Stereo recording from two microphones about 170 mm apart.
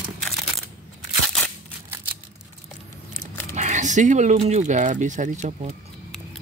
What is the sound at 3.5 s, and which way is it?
Speech, 45° right (ahead or behind).